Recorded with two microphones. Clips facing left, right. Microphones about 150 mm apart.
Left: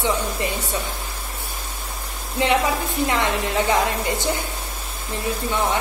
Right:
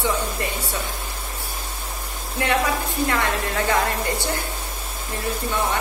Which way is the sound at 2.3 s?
20° left (ahead or behind).